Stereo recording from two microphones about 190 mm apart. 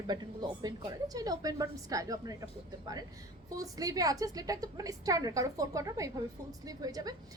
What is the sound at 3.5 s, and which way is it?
A woman's voice, 20° right (ahead or behind).